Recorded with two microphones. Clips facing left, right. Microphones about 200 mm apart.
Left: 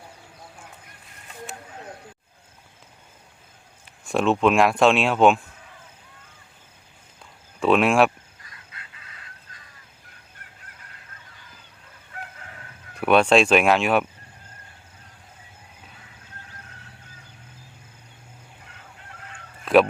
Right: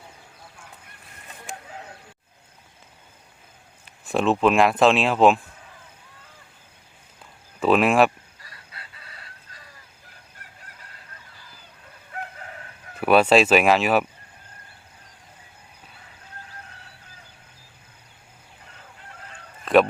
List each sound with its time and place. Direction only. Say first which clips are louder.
4.0 s speech: even; centre (ahead or behind)
7.6 s speech: even; centre (ahead or behind)
8.4 s chicken: right 1 dB; 35° right (ahead or behind)
11.3 s a sound: even; 35° right (ahead or behind)
13.0 s speech: right 1 dB; 5° right (ahead or behind)
19.6 s a sound: even; centre (ahead or behind)